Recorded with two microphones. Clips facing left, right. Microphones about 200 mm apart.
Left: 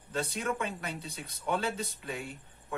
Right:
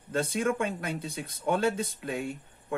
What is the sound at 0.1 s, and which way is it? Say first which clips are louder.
Speech: right 6 dB; 50° right (ahead or behind).